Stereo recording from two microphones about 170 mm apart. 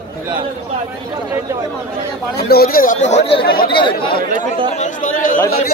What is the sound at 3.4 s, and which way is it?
Speech, 60° left (ahead or behind).